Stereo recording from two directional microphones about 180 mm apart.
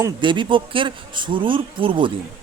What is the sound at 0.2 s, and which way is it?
Speech, 25° right (ahead or behind).